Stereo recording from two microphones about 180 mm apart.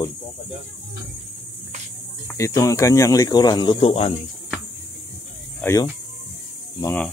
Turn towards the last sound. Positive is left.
turn(degrees=10)  # may be behind; listen again after turning